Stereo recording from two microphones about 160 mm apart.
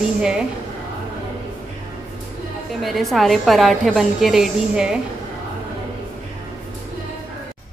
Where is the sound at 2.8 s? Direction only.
Centre (ahead or behind).